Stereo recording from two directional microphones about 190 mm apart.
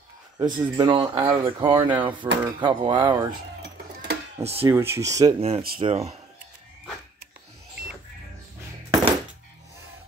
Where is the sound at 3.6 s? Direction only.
60° right (ahead or behind).